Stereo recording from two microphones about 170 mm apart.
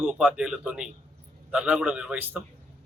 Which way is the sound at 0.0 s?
5° right (ahead or behind).